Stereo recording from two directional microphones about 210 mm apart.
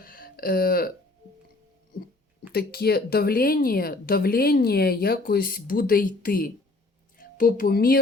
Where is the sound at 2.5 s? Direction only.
50° left (ahead or behind).